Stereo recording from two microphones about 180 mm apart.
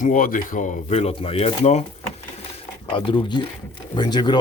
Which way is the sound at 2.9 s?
30° left (ahead or behind).